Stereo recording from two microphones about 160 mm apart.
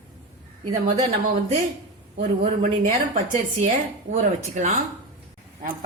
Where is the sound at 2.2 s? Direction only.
55° right (ahead or behind).